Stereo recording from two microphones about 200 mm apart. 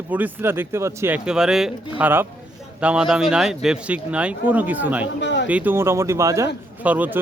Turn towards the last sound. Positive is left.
turn(degrees=-10)  # may be behind; listen again after turning